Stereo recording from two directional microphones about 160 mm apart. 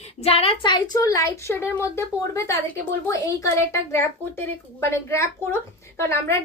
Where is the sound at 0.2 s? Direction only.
40° left (ahead or behind).